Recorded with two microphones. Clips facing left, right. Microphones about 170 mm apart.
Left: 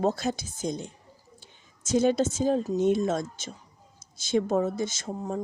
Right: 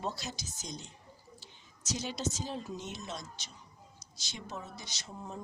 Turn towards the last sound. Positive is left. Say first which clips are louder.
# left 12 dB
turn(degrees=45)  # may be behind; listen again after turning